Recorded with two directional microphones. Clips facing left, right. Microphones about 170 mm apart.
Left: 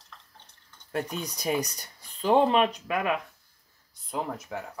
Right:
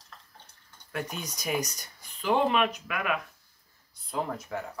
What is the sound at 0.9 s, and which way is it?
Speech, 35° left (ahead or behind).